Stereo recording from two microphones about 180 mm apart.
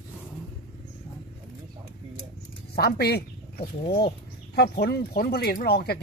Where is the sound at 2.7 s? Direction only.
60° left (ahead or behind).